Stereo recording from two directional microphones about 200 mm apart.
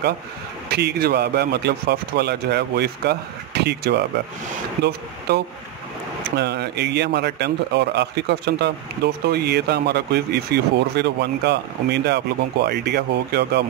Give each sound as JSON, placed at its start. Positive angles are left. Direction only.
{"t": 0.7, "sound": "speech", "side_deg": -55}
{"t": 6.3, "sound": "speech", "side_deg": -55}